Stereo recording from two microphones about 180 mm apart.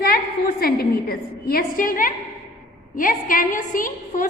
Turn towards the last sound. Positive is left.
turn(degrees=50)  # may be behind; listen again after turning